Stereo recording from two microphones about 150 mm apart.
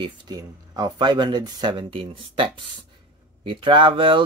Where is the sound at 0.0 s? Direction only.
25° right (ahead or behind).